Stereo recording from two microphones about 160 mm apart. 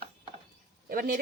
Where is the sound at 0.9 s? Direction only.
60° right (ahead or behind).